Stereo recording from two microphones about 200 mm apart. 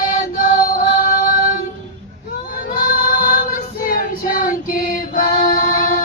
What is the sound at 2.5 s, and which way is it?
Child singing, 45° left (ahead or behind).